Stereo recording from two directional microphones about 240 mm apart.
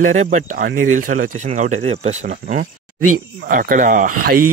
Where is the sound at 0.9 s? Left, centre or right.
Right.